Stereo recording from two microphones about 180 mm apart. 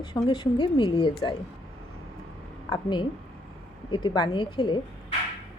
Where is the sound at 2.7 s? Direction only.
25° left (ahead or behind).